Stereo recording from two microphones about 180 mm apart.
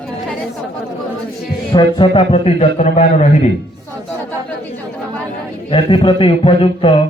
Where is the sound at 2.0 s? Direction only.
30° left (ahead or behind).